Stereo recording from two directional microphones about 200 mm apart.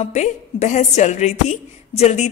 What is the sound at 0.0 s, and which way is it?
Speech, 35° left (ahead or behind).